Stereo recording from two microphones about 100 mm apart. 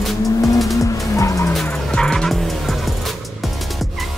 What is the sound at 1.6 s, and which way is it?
Vehicle, 10° left (ahead or behind).